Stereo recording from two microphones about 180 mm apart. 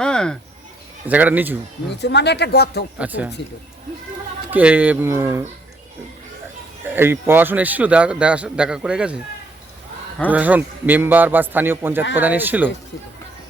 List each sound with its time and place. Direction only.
0.0 s a sound: 5° left (ahead or behind)
1.0 s a man's voice: 10° right (ahead or behind)
2.0 s speech: 70° left (ahead or behind)
3.0 s a man's voice: 5° right (ahead or behind)
4.5 s a man's voice: 10° right (ahead or behind)
6.8 s a man's voice: 10° right (ahead or behind)
10.3 s a man's voice: 10° right (ahead or behind)